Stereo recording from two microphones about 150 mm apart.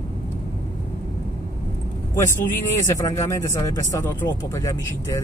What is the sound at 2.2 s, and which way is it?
Speech, 20° left (ahead or behind).